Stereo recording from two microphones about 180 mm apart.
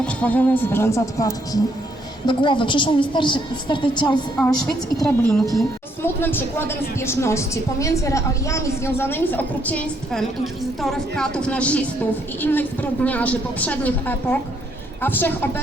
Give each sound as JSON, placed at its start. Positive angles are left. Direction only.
{"t": 0.0, "sound": "a woman's voice", "side_deg": 5}
{"t": 5.0, "sound": "speech", "side_deg": 5}
{"t": 6.0, "sound": "a woman's voice", "side_deg": 10}